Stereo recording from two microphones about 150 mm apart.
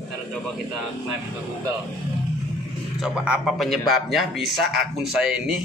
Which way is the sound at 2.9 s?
5° right (ahead or behind).